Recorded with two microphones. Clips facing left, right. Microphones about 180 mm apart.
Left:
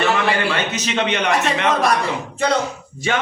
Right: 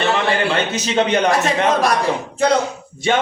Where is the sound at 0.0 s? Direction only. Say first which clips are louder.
Right 1 dB; 30° right (ahead or behind).